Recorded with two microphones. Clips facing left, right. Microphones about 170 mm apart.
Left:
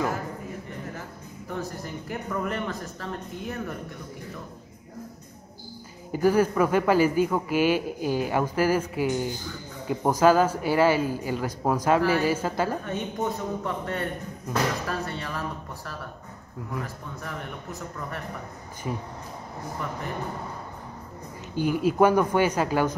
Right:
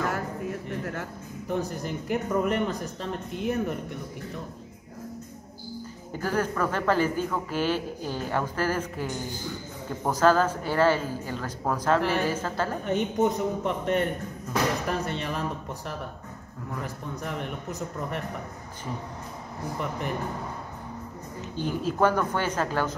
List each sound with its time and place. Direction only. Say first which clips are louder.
1.5 s speech: right 4 dB; 20° right (ahead or behind)
6.2 s speech: left 6 dB; 10° left (ahead or behind)
12.8 s speech: right 5 dB; 20° right (ahead or behind)
16.8 s speech: right 3 dB; 20° right (ahead or behind)
18.9 s speech: left 4 dB; 15° left (ahead or behind)
21.5 s speech: left 5 dB; 10° left (ahead or behind)